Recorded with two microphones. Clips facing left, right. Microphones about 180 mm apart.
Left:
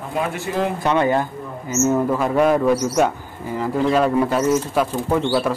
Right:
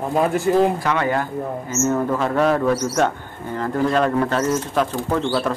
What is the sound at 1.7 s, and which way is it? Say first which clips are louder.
A man's voice: left 3 dB; 10° left (ahead or behind).